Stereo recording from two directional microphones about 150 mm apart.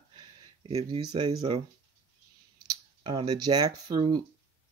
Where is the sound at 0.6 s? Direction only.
40° right (ahead or behind).